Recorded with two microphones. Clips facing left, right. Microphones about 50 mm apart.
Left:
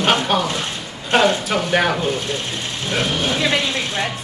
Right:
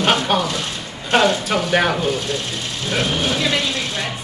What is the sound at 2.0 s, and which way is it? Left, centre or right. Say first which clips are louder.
Speech: right 1 dB; left.